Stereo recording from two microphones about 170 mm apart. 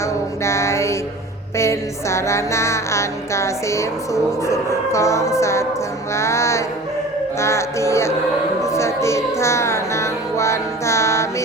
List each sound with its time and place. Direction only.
0.0 s mantra: 15° left (ahead or behind)
1.5 s music: 15° left (ahead or behind)